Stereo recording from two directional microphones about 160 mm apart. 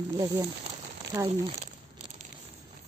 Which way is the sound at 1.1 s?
20° right (ahead or behind).